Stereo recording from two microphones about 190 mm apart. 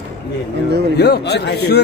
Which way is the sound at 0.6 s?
60° right (ahead or behind).